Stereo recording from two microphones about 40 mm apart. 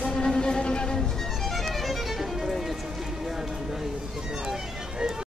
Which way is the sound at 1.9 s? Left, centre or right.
Centre.